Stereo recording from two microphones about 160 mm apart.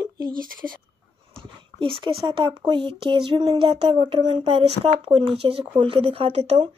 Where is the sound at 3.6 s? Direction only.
35° right (ahead or behind).